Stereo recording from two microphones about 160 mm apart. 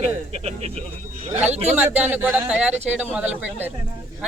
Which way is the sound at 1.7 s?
10° right (ahead or behind).